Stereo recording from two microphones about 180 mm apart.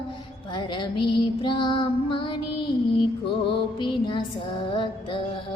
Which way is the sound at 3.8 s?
25° left (ahead or behind).